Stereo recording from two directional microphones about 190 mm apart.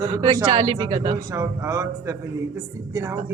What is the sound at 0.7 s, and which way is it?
A man's voice, 20° right (ahead or behind).